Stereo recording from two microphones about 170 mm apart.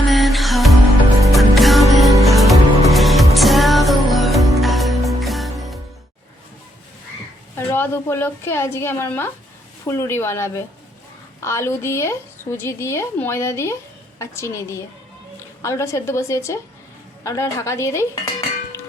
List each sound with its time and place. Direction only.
0.1 s music: centre (ahead or behind)
7.5 s a woman's voice: 15° left (ahead or behind)
17.2 s dishes: 15° left (ahead or behind)